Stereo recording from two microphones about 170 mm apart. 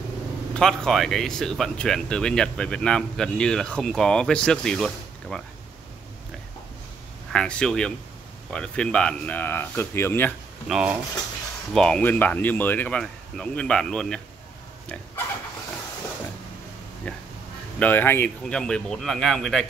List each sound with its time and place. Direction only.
0.6 s speech: 5° left (ahead or behind)
7.3 s speech: 5° left (ahead or behind)
10.7 s speech: 5° right (ahead or behind)
17.1 s speech: 5° left (ahead or behind)